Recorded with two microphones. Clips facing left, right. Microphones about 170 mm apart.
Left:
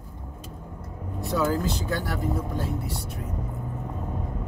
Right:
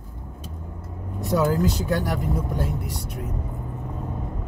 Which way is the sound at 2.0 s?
15° right (ahead or behind).